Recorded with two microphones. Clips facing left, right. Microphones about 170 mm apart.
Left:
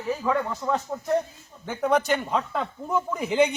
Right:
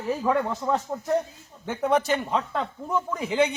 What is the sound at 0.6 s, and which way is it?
Speech, 10° right (ahead or behind).